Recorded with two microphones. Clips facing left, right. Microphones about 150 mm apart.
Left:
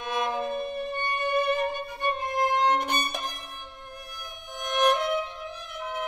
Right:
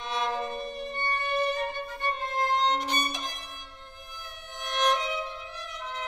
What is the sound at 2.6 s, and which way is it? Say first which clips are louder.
Music: left 3 dB; 55° left (ahead or behind).